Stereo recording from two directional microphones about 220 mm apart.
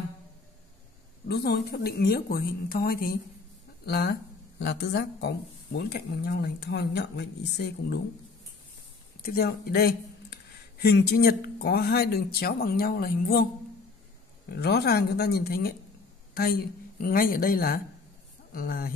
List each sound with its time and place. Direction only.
1.3 s speech: 50° left (ahead or behind)
9.2 s speech: 45° left (ahead or behind)
14.5 s speech: 45° left (ahead or behind)